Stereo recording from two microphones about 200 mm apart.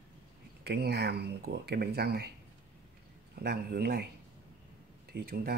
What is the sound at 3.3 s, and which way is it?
Speech, 50° right (ahead or behind).